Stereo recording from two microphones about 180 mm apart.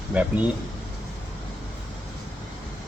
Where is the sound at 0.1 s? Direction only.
10° right (ahead or behind).